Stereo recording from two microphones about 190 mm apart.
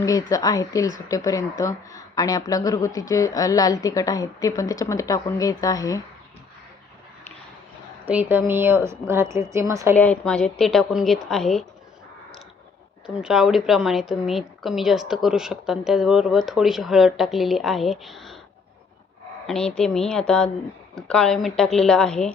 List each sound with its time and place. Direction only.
0.0 s speech: 20° left (ahead or behind)
8.0 s a woman's voice: 10° right (ahead or behind)
9.9 s a woman's voice: 10° left (ahead or behind)
13.2 s a woman's voice: centre (ahead or behind)
19.5 s a woman's voice: 5° left (ahead or behind)